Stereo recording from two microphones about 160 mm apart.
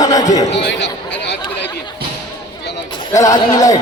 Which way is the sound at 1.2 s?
90° left.